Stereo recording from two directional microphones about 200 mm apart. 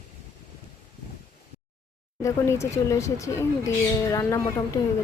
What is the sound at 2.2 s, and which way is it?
Speech, 15° left (ahead or behind).